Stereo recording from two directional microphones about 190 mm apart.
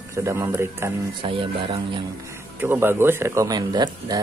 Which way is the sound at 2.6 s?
10° right (ahead or behind).